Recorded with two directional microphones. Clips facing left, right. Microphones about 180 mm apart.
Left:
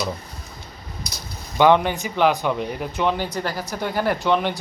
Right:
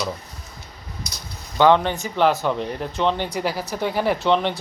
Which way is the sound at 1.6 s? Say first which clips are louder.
Even; 15° left (ahead or behind).